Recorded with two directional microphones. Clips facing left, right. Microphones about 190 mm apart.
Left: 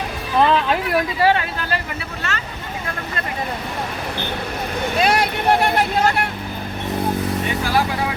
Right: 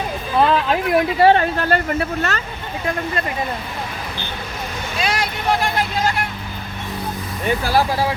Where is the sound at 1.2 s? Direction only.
40° right (ahead or behind).